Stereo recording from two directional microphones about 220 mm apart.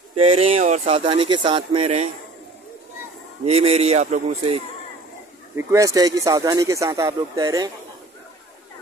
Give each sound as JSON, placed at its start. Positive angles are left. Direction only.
{"t": 0.2, "sound": "speech", "side_deg": -25}
{"t": 3.4, "sound": "speech", "side_deg": -30}
{"t": 5.6, "sound": "speech", "side_deg": -15}